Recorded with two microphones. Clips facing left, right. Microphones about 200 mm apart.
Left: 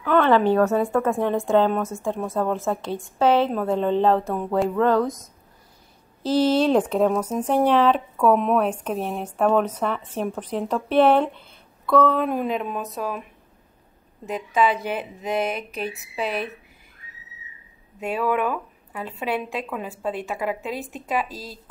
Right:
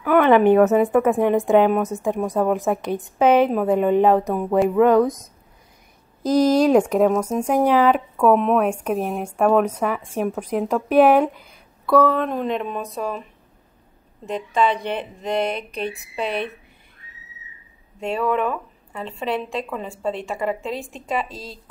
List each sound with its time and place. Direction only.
0.0 s a woman's voice: 15° right (ahead or behind)
5.0 s speech: centre (ahead or behind)
6.7 s a woman's voice: 10° right (ahead or behind)
12.2 s speech: 5° left (ahead or behind)
18.0 s speech: 5° left (ahead or behind)